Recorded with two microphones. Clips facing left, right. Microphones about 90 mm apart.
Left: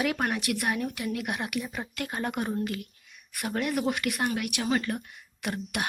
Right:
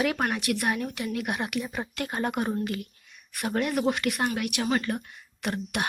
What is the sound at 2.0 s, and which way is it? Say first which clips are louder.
Speech: right 3 dB; 15° right (ahead or behind).